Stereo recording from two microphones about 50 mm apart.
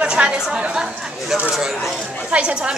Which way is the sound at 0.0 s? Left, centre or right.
Centre.